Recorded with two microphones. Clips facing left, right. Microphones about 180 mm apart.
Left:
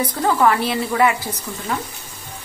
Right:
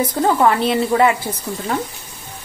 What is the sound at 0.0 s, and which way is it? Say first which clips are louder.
A woman's voice: right 2 dB; 25° right (ahead or behind).